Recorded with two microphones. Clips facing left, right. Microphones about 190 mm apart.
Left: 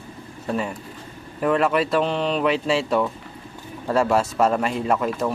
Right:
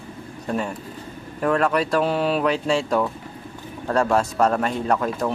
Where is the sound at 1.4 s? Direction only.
5° left (ahead or behind).